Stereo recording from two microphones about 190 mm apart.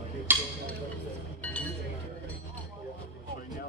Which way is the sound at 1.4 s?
10° left (ahead or behind).